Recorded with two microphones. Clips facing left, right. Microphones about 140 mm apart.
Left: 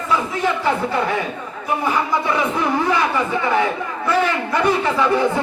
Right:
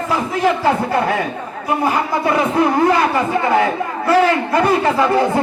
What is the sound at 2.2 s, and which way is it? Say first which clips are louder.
Speech: right 5 dB; 45° right (ahead or behind).